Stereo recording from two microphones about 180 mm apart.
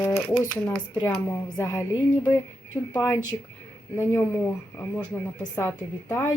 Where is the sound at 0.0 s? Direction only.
10° left (ahead or behind).